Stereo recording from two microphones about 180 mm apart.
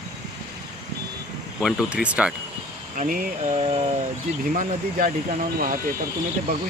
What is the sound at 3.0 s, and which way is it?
Speech, 45° right (ahead or behind).